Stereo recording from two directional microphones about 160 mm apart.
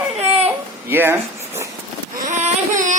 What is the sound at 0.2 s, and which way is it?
Baby cry, 40° right (ahead or behind).